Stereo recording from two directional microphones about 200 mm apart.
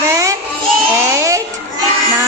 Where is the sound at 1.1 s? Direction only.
15° right (ahead or behind).